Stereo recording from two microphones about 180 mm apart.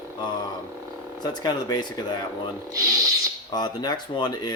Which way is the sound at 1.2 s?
25° left (ahead or behind).